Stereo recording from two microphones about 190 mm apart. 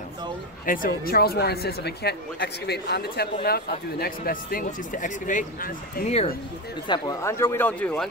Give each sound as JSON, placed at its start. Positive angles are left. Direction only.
{"t": 0.7, "sound": "speech", "side_deg": 50}
{"t": 6.9, "sound": "speech", "side_deg": 20}